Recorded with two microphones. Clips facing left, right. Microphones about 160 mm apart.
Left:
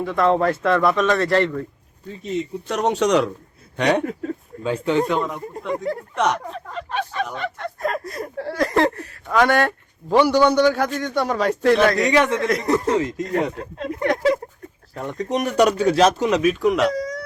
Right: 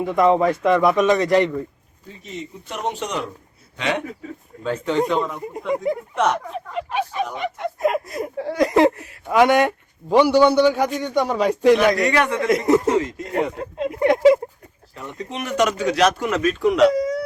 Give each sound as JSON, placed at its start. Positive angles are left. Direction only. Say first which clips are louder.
{"t": 0.0, "sound": "speech", "louder": "right 2 dB", "side_deg": -15}
{"t": 2.6, "sound": "speech", "louder": "left 7 dB", "side_deg": 90}
{"t": 3.8, "sound": "speech", "louder": "left 5 dB", "side_deg": 45}
{"t": 4.6, "sound": "speech", "louder": "left 2 dB", "side_deg": 10}
{"t": 5.4, "sound": "speech", "louder": "right 2 dB", "side_deg": -15}
{"t": 11.9, "sound": "a man's voice", "louder": "left 2 dB", "side_deg": 20}
{"t": 12.5, "sound": "speech", "louder": "right 3 dB", "side_deg": -25}
{"t": 14.9, "sound": "speech", "louder": "left 7 dB", "side_deg": 45}
{"t": 16.4, "sound": "speech", "louder": "right 6 dB", "side_deg": 5}
{"t": 16.9, "sound": "a sound", "louder": "right 5 dB", "side_deg": -25}